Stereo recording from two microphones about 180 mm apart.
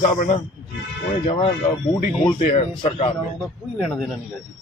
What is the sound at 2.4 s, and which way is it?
Speech, 40° left (ahead or behind).